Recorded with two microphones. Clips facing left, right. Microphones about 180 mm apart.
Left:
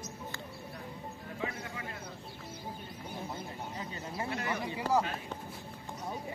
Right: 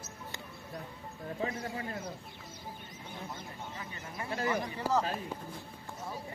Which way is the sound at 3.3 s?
25° left (ahead or behind).